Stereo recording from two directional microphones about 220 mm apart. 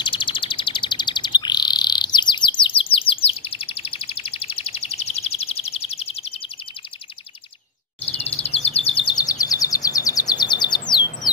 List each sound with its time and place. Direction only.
0.0 s bird: 20° left (ahead or behind)
8.0 s bird vocalization: 30° left (ahead or behind)